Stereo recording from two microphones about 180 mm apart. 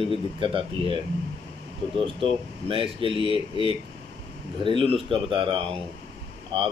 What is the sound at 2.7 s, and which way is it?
Speech, 30° right (ahead or behind).